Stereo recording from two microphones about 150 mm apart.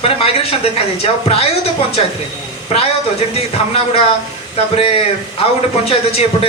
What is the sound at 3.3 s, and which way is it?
Speech, 40° left (ahead or behind).